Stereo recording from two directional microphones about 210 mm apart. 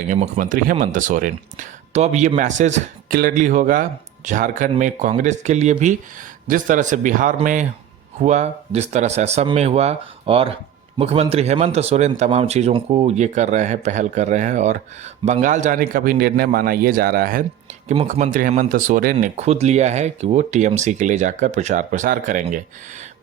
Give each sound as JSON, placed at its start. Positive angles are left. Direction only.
{"t": 0.1, "sound": "speech", "side_deg": -40}